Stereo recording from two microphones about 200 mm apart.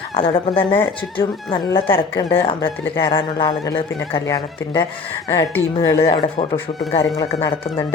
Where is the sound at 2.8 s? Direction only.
10° left (ahead or behind).